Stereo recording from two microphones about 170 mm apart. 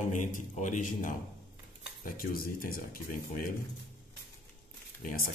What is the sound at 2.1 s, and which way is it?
Speech, 60° left (ahead or behind).